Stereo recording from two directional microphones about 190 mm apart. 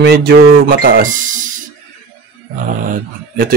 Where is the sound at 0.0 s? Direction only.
55° right (ahead or behind).